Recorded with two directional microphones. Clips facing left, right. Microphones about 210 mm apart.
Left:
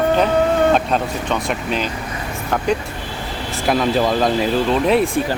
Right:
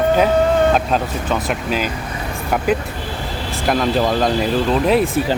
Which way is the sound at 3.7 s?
Centre (ahead or behind).